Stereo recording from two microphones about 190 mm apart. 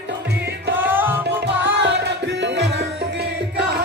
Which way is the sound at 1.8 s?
65° right (ahead or behind).